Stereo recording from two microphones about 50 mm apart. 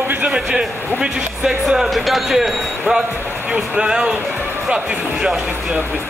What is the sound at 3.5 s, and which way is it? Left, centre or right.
Speech, centre.